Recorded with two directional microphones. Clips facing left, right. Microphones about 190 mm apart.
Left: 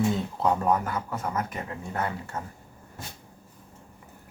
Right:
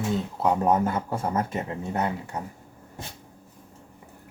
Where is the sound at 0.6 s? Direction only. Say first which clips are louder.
Right 3 dB; 25° right (ahead or behind).